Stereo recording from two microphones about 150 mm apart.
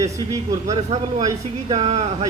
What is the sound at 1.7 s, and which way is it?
Speech, 45° right (ahead or behind).